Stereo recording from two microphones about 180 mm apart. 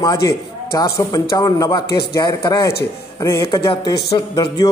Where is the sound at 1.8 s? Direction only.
60° left (ahead or behind).